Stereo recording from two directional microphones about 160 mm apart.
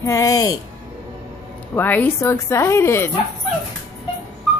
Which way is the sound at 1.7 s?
10° left (ahead or behind).